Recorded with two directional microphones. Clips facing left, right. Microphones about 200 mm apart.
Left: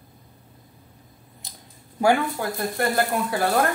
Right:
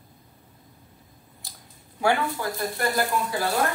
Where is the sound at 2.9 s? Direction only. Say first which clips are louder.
Left 2 dB; 60° left (ahead or behind).